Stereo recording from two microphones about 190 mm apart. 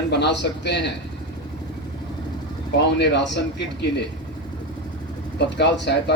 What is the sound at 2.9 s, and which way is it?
Speech, 65° left (ahead or behind).